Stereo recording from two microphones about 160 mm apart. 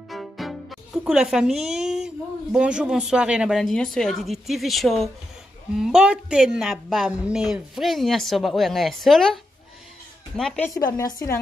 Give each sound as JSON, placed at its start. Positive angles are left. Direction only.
{"t": 0.1, "sound": "a woman's voice", "side_deg": 0}
{"t": 10.9, "sound": "a woman's voice", "side_deg": 25}